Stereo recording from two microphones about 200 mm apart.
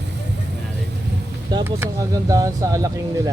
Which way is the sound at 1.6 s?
10° right (ahead or behind).